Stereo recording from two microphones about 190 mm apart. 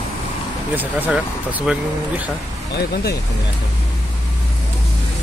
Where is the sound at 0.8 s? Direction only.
10° right (ahead or behind).